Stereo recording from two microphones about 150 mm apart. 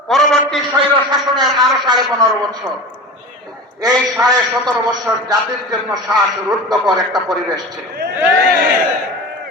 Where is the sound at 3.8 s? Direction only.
25° right (ahead or behind).